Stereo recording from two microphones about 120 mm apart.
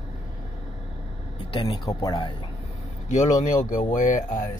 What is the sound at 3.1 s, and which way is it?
Speech, 90° left.